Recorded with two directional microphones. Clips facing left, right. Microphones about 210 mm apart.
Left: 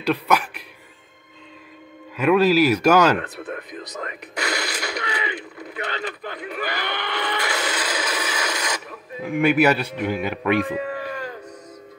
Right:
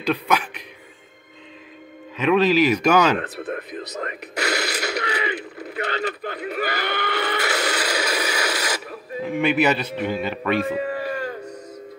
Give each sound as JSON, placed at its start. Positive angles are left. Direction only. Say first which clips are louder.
{"t": 0.0, "sound": "a man's voice", "louder": "left 1 dB", "side_deg": 5}
{"t": 2.1, "sound": "a man's voice", "louder": "left 1 dB", "side_deg": 10}
{"t": 3.2, "sound": "speech", "louder": "right 2 dB", "side_deg": -40}
{"t": 4.4, "sound": "mechanisms", "louder": "right 3 dB", "side_deg": -40}
{"t": 5.7, "sound": "speech", "louder": "right 4 dB", "side_deg": -40}
{"t": 7.7, "sound": "a sound", "louder": "right 3 dB", "side_deg": -10}
{"t": 9.2, "sound": "a man's voice", "louder": "left 2 dB", "side_deg": 10}
{"t": 10.8, "sound": "livestock", "louder": "right 3 dB", "side_deg": -40}